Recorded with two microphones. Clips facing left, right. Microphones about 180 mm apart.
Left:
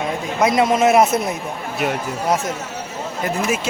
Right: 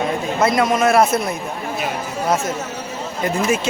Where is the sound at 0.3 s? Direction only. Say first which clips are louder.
Left 1 dB; 15° left (ahead or behind).